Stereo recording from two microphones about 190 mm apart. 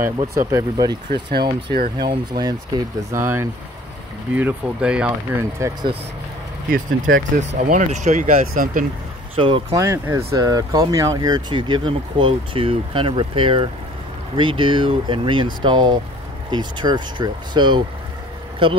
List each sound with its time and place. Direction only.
0.3 s speech: 15° right (ahead or behind)
1.7 s speech: 55° right (ahead or behind)
2.0 s speech: 20° right (ahead or behind)
6.7 s speech: 45° right (ahead or behind)
9.3 s speech: 30° right (ahead or behind)
9.8 s speech: 15° right (ahead or behind)